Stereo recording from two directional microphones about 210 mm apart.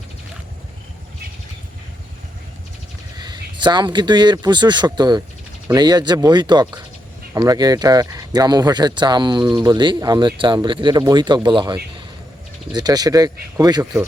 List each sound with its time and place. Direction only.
3.2 s speech: 20° right (ahead or behind)